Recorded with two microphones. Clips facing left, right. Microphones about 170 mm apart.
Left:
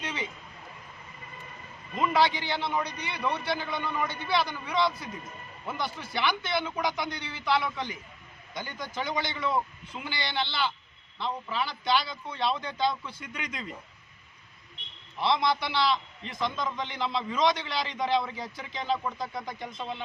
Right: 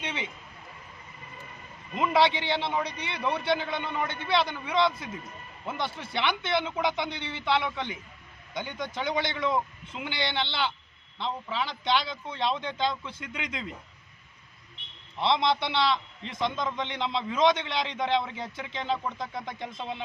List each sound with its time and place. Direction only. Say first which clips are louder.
2.0 s a man's voice: right 1 dB; 25° right (ahead or behind)
15.2 s a man's voice: right 1 dB; 25° right (ahead or behind)